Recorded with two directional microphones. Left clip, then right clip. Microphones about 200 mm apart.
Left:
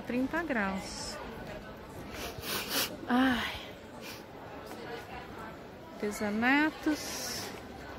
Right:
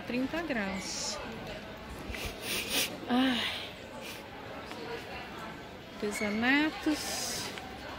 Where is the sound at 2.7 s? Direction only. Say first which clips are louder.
Left 1 dB; 10° left (ahead or behind).